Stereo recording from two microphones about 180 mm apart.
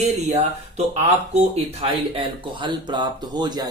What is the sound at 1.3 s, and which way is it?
Speech, 35° right (ahead or behind).